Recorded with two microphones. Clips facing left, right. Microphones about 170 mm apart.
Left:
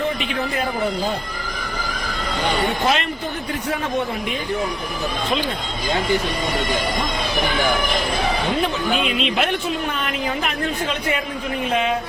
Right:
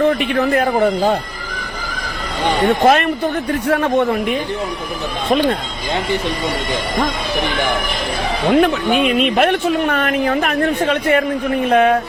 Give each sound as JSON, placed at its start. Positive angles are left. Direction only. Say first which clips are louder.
{"t": 0.3, "sound": "speech", "louder": "right 8 dB", "side_deg": -60}
{"t": 2.6, "sound": "speech", "louder": "right 12 dB", "side_deg": -55}
{"t": 3.7, "sound": "speech", "louder": "right 8 dB", "side_deg": -65}
{"t": 5.3, "sound": "speech", "louder": "right 10 dB", "side_deg": -60}
{"t": 8.4, "sound": "speech", "louder": "right 8 dB", "side_deg": -60}